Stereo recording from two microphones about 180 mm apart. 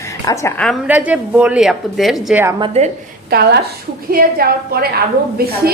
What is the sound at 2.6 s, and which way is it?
Speech, 35° right (ahead or behind).